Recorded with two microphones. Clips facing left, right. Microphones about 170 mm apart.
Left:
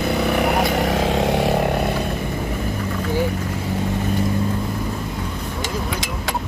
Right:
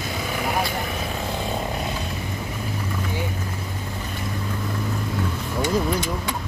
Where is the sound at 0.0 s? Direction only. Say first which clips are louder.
Left 9 dB; 65° left (ahead or behind).